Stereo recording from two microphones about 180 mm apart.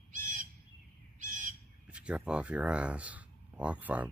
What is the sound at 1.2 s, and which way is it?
Bird, 45° right (ahead or behind).